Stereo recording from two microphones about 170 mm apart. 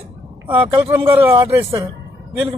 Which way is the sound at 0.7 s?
15° right (ahead or behind).